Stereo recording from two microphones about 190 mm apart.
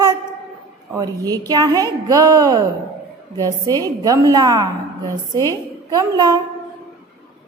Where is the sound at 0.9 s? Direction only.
20° right (ahead or behind).